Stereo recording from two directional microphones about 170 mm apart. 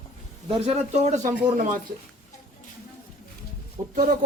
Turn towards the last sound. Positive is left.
turn(degrees=-50)  # may be behind; listen again after turning